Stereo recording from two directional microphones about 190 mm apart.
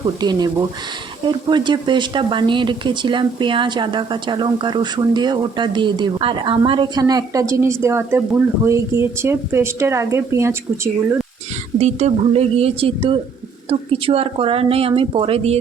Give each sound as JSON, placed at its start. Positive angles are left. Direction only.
{"t": 0.2, "sound": "speech", "side_deg": -20}
{"t": 11.8, "sound": "a woman's voice", "side_deg": -35}